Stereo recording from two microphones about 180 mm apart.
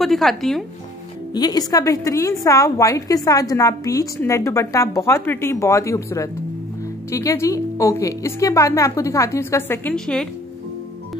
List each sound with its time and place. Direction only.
0.0 s speech: centre (ahead or behind)
1.3 s a woman's voice: 20° left (ahead or behind); by 10.2 s 5° left (ahead or behind)